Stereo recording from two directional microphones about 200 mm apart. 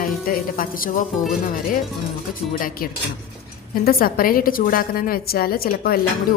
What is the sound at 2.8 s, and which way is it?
A woman's voice, 45° left (ahead or behind).